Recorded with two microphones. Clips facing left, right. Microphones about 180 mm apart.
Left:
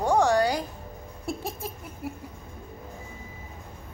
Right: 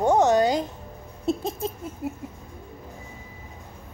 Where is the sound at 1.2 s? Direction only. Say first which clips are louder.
Right 7 dB; 20° right (ahead or behind).